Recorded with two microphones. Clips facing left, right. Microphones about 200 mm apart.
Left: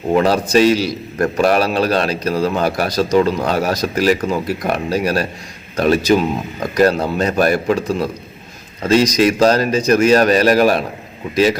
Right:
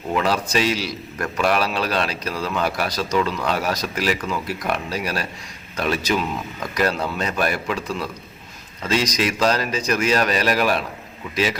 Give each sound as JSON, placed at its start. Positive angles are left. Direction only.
{"t": 0.1, "sound": "a man's voice", "side_deg": 40}